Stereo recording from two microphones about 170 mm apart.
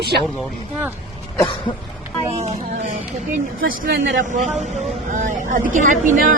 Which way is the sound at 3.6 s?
55° right (ahead or behind).